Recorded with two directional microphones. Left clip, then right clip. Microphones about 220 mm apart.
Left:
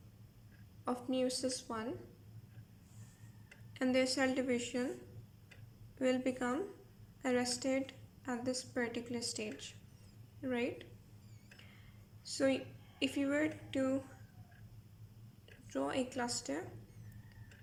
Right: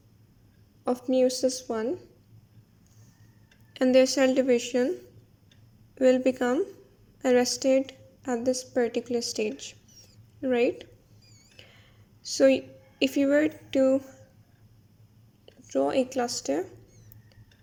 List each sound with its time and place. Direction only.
0.9 s a woman's voice: 35° right (ahead or behind)
3.8 s a woman's voice: 35° right (ahead or behind)
6.0 s a woman's voice: 35° right (ahead or behind)
11.5 s a sound: 35° right (ahead or behind)
12.4 s a woman's voice: 35° right (ahead or behind)
15.7 s a woman's voice: 35° right (ahead or behind)